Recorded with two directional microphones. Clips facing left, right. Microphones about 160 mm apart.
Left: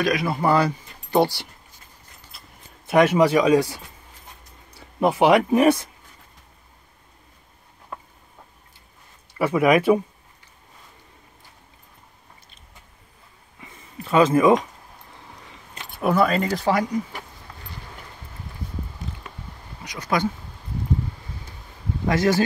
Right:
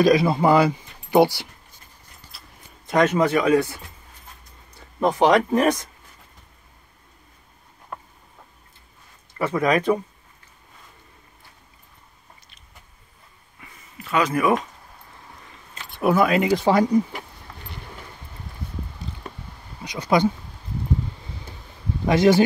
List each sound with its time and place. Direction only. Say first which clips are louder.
0.0 s speech: right 6 dB; 30° right (ahead or behind)
0.4 s speech: right 3 dB; 15° right (ahead or behind)
2.9 s speech: left 2 dB; 10° left (ahead or behind)
9.4 s speech: left 3 dB; 10° left (ahead or behind)
13.9 s speech: left 5 dB; 30° left (ahead or behind)
15.9 s speech: right 1 dB; 5° right (ahead or behind)
16.5 s speech: right 3 dB; 25° right (ahead or behind)
19.8 s speech: right 4 dB; 30° right (ahead or behind)
22.0 s speech: right 4 dB; 15° right (ahead or behind)